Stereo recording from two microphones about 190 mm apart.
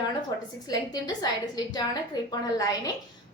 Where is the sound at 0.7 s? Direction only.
20° left (ahead or behind).